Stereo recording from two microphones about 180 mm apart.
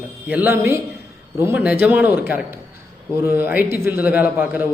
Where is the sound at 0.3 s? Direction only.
10° right (ahead or behind).